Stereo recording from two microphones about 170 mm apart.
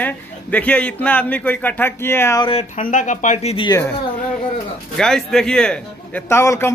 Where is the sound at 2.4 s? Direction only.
30° left (ahead or behind).